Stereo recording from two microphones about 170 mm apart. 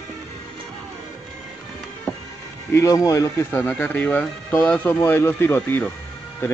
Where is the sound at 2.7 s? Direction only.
20° left (ahead or behind).